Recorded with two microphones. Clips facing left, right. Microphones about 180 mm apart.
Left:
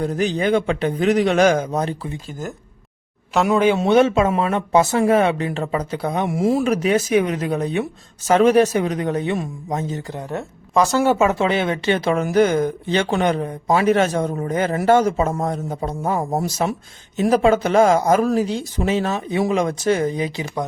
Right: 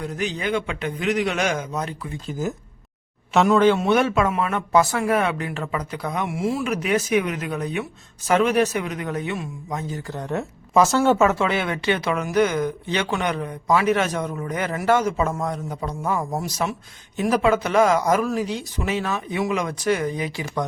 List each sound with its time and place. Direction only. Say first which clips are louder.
0.0 s a man's voice: left 7 dB; 35° left (ahead or behind)
2.2 s speech: right 3 dB; centre (ahead or behind)
3.5 s speech: even; 10° left (ahead or behind)
3.8 s a man's voice: left 4 dB; 25° left (ahead or behind)
10.2 s a man's voice: right 1 dB; centre (ahead or behind); by 20.4 s 20° left (ahead or behind)